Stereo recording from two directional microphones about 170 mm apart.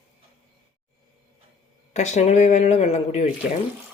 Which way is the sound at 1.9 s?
40° left (ahead or behind).